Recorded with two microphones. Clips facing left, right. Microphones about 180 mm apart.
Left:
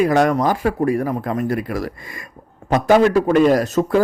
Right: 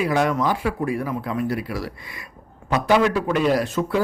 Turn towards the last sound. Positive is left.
turn(degrees=45)  # may be behind; listen again after turning